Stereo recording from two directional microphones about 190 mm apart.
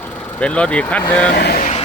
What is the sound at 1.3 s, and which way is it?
Vehicle, 55° left (ahead or behind).